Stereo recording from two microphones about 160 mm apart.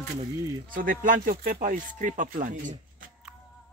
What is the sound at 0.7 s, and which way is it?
Speech, 60° right (ahead or behind).